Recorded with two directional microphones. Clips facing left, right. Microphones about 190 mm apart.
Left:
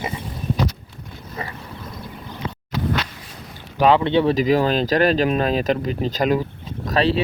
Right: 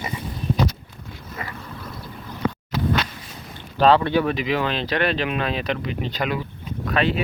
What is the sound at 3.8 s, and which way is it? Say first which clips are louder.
Speech: left 1 dB; 20° left (ahead or behind).